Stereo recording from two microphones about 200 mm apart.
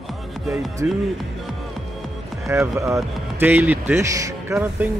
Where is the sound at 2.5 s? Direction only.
15° right (ahead or behind).